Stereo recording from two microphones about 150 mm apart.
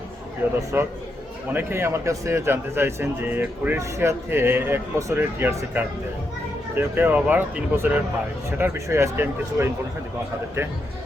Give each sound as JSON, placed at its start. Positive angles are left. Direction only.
{"t": 0.7, "sound": "speech", "side_deg": -15}